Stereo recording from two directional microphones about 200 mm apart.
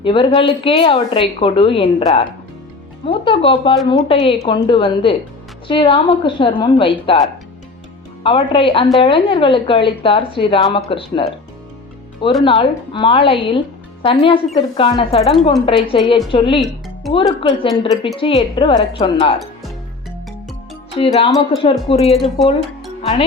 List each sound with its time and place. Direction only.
0.0 s speech: 25° left (ahead or behind)
8.2 s speech: 25° left (ahead or behind)
12.5 s speech: 25° left (ahead or behind)
16.6 s music: centre (ahead or behind)
17.1 s speech: 25° left (ahead or behind)
21.0 s speech: 25° left (ahead or behind)
22.0 s speech: centre (ahead or behind)